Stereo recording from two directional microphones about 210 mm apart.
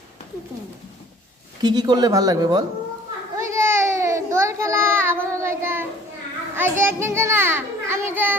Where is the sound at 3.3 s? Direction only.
15° right (ahead or behind).